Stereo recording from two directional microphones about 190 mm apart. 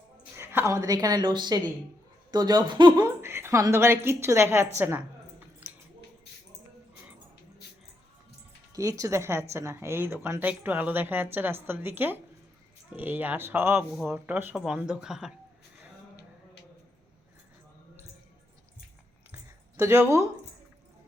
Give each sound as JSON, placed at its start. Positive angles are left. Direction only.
{"t": 0.3, "sound": "a woman's voice", "side_deg": -15}
{"t": 8.7, "sound": "speech", "side_deg": -15}
{"t": 19.8, "sound": "speech", "side_deg": -15}